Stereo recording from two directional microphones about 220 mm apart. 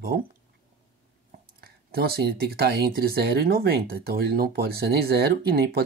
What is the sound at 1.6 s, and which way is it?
Speech, 45° right (ahead or behind).